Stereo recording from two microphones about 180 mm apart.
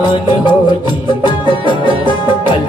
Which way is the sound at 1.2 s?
25° left (ahead or behind).